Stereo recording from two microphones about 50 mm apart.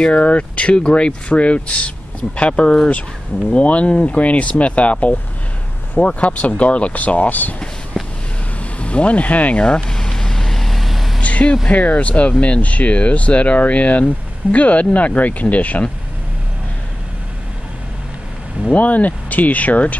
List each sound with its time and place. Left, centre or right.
0.0 s speech: left
5.9 s speech: left
8.0 s a sound: centre
8.7 s vehicle: left; by 11.1 s centre
11.1 s vehicle: left
11.7 s speech: left
18.7 s speech: left